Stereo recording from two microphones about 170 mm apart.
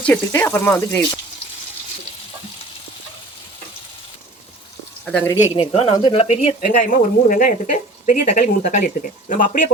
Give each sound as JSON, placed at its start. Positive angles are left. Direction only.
{"t": 0.0, "sound": "speech", "side_deg": 10}
{"t": 5.0, "sound": "speech", "side_deg": 10}
{"t": 5.4, "sound": "speech", "side_deg": 35}
{"t": 6.9, "sound": "speech", "side_deg": 50}